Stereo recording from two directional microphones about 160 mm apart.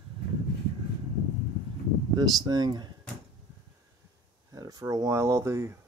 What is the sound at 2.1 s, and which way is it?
Speech, 25° right (ahead or behind).